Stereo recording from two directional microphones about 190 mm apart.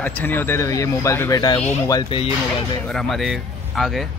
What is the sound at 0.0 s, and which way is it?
Speech, 10° left (ahead or behind).